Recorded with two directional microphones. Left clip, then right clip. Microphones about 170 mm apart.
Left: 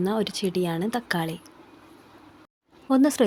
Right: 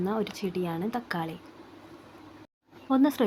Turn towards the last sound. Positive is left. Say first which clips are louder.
# left 4 dB
turn(degrees=40)  # may be behind; listen again after turning